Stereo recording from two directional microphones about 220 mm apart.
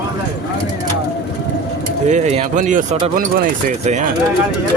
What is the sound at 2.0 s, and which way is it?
Speech, 30° right (ahead or behind).